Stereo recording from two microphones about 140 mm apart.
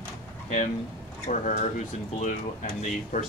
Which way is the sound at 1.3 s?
60° left (ahead or behind).